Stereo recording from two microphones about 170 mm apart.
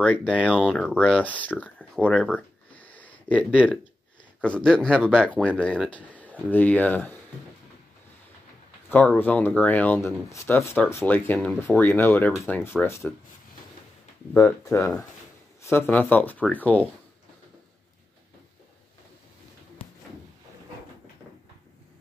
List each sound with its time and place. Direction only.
0.0 s speech: 5° left (ahead or behind)
2.1 s a sound: 5° left (ahead or behind)
4.4 s speech: 5° left (ahead or behind)
8.8 s speech: 10° left (ahead or behind)
14.3 s speech: 15° left (ahead or behind)